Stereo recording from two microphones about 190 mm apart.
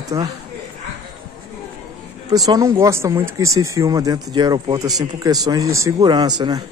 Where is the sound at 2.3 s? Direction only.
20° right (ahead or behind).